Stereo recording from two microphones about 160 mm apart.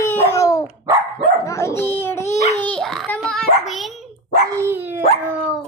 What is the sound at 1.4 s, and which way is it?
Dog, 15° left (ahead or behind).